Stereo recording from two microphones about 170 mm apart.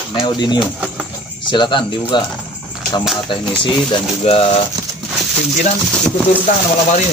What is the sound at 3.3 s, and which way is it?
Speech, 30° left (ahead or behind).